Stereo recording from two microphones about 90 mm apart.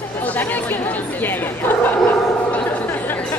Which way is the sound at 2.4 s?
20° left (ahead or behind).